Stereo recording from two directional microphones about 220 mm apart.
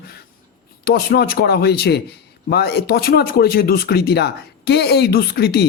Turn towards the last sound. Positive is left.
turn(degrees=45)  # may be behind; listen again after turning